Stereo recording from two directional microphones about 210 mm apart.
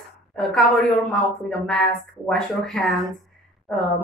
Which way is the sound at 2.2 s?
5° left (ahead or behind).